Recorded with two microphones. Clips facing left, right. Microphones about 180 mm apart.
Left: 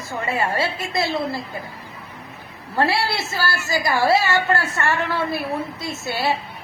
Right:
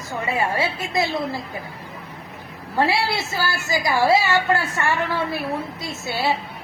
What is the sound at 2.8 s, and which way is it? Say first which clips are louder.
A woman's voice: even; 15° right (ahead or behind).